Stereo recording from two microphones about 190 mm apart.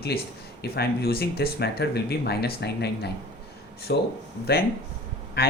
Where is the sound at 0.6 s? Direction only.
55° left (ahead or behind).